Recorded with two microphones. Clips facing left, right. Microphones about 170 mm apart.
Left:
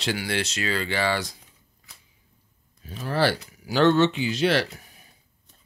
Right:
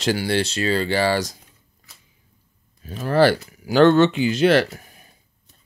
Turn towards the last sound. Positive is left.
turn(degrees=-50)  # may be behind; listen again after turning